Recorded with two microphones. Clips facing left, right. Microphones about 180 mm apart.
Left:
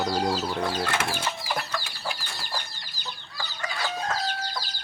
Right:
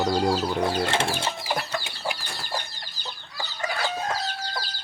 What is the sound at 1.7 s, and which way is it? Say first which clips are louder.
Chicken: right 3 dB; 25° right (ahead or behind).